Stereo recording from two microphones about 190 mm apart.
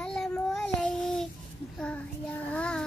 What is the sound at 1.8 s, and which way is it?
Child singing, 5° left (ahead or behind).